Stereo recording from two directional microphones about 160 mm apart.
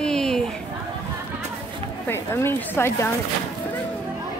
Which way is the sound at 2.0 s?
15° left (ahead or behind).